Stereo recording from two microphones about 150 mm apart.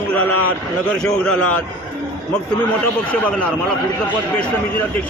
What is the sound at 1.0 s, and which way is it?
Speech, 5° left (ahead or behind).